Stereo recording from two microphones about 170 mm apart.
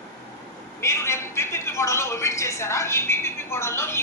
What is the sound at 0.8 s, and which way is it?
A woman's voice, 15° left (ahead or behind).